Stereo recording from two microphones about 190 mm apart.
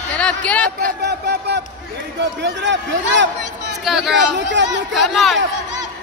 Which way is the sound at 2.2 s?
70° right (ahead or behind).